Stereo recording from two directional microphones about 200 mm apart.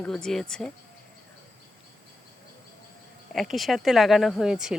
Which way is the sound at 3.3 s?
Centre (ahead or behind).